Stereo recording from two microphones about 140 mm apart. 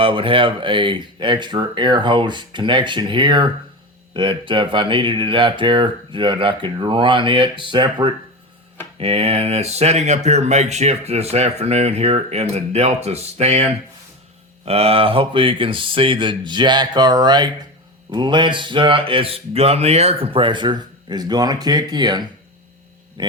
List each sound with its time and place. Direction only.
0.0 s speech: 40° right (ahead or behind)